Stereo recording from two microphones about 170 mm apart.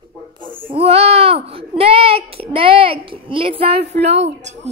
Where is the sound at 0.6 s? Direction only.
35° right (ahead or behind).